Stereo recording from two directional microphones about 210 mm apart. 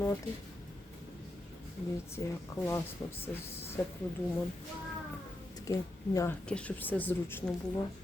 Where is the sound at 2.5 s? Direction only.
15° left (ahead or behind).